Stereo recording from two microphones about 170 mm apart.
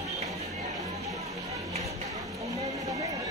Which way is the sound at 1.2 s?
20° right (ahead or behind).